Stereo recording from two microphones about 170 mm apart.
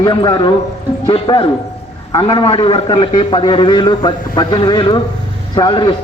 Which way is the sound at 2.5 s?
35° left (ahead or behind).